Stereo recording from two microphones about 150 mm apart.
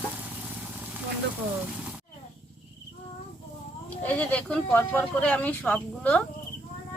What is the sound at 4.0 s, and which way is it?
Speech, 10° left (ahead or behind).